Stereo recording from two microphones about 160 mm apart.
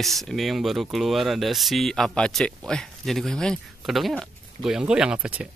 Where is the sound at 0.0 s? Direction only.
Centre (ahead or behind).